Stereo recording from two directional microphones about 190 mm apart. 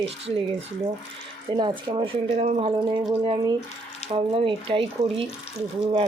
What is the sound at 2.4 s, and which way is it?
Speech, 35° right (ahead or behind).